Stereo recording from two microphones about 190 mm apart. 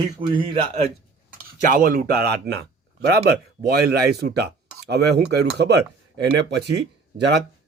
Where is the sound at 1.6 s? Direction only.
45° right (ahead or behind).